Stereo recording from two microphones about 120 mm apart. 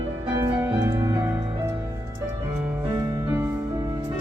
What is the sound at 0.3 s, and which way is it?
Music, 20° right (ahead or behind).